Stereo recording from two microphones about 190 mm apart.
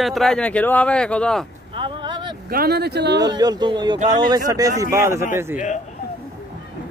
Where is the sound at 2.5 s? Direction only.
55° right (ahead or behind).